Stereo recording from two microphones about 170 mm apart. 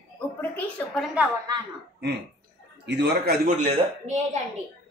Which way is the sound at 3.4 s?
40° right (ahead or behind).